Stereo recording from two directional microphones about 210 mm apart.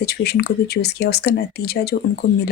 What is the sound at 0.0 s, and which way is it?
Speech, 50° left (ahead or behind).